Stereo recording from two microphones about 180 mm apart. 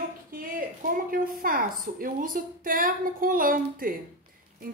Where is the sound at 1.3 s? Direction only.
50° right (ahead or behind).